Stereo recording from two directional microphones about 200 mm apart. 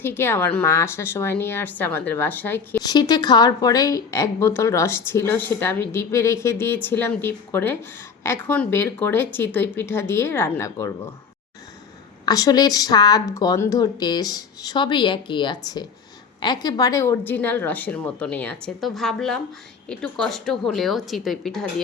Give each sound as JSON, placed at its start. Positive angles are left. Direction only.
{"t": 0.0, "sound": "a woman's voice", "side_deg": 10}
{"t": 12.2, "sound": "a woman's voice", "side_deg": 20}